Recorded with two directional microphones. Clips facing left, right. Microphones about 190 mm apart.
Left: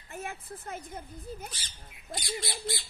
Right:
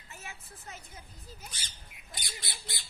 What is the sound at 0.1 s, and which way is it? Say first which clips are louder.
A woman's voice: left 9 dB; 55° left (ahead or behind).